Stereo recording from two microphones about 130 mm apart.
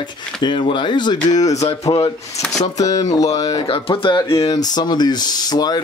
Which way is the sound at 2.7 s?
30° left (ahead or behind).